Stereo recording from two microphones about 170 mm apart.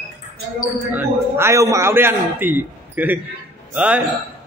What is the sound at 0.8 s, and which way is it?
A man's voice, 15° right (ahead or behind).